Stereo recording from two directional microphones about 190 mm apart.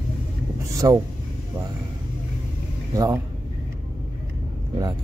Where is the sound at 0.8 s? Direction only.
20° right (ahead or behind).